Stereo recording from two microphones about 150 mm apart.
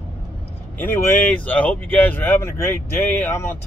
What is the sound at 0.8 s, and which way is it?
Speech, 15° left (ahead or behind).